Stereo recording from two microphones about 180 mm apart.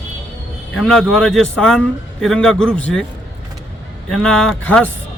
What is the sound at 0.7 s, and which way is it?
Speech, centre (ahead or behind).